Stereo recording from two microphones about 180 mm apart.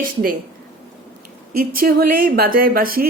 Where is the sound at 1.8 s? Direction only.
55° right (ahead or behind).